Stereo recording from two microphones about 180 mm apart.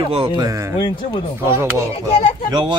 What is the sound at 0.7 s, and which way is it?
Speech, 25° left (ahead or behind).